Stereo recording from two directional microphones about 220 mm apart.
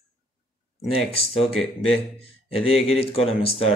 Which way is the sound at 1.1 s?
25° left (ahead or behind).